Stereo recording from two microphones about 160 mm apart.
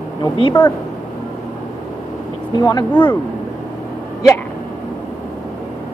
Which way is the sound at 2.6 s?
25° left (ahead or behind).